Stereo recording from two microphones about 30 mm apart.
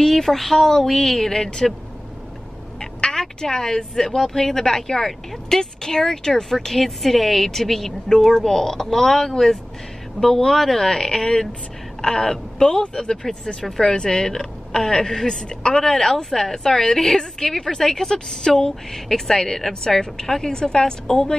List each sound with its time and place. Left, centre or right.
0.0 s a woman's voice: centre
2.8 s a sound: left
3.7 s a woman's voice: centre
6.5 s a woman's voice: centre
12.8 s a woman's voice: left
13.9 s a woman's voice: left
16.1 s a woman's voice: centre